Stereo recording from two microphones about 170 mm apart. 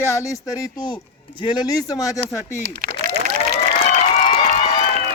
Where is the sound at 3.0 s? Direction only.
60° right (ahead or behind).